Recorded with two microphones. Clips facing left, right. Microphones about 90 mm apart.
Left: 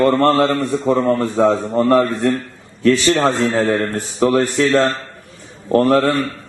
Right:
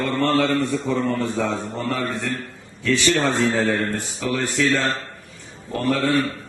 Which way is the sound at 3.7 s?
40° left (ahead or behind).